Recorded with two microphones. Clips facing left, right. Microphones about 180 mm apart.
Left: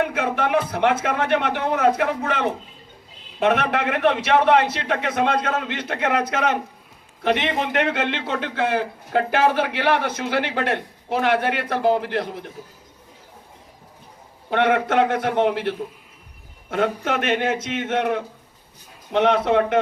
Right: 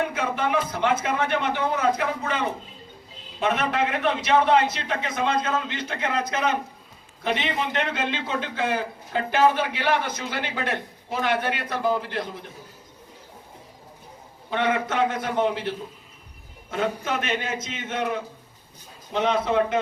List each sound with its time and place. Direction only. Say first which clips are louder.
0.1 s a man's voice: left 4 dB; 65° left (ahead or behind)
7.3 s a man's voice: left 5 dB; 55° left (ahead or behind)
14.5 s a man's voice: left 6 dB; 65° left (ahead or behind)